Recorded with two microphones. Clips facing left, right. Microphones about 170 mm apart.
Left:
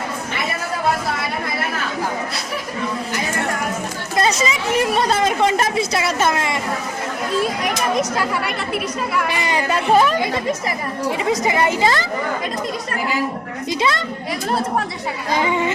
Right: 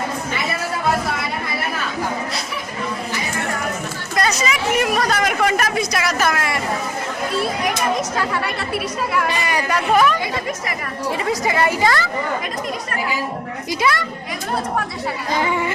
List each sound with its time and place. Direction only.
4.2 s speech: 30° left (ahead or behind)
9.3 s speech: 20° left (ahead or behind)
11.3 s speech: 20° left (ahead or behind)
13.7 s speech: 25° left (ahead or behind)
15.4 s speech: 20° left (ahead or behind)